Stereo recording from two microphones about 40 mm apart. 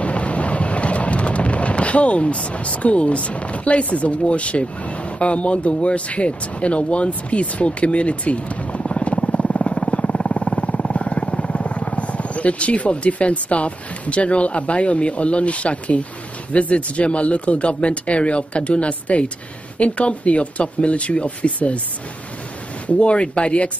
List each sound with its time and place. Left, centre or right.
0.0 s wind noise: left
9.8 s vehicle: left
10.6 s speech: left
22.8 s speech: left